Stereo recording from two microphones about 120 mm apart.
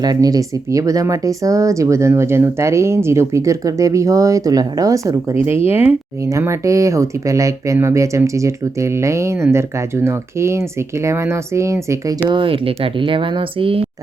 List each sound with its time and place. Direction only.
0.0 s speech: 30° right (ahead or behind); by 6.0 s 15° right (ahead or behind)
6.2 s speech: 25° right (ahead or behind)
12.3 s speech: 45° right (ahead or behind)